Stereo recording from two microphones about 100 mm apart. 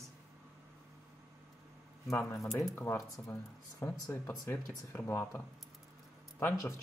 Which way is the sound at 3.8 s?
25° left (ahead or behind).